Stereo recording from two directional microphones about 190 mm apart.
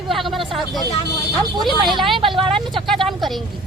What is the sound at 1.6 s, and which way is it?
Speech, centre (ahead or behind).